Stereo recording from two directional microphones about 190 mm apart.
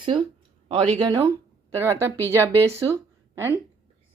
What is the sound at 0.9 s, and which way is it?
Speech, 20° right (ahead or behind).